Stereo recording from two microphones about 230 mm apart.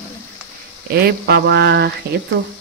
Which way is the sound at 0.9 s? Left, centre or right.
Right.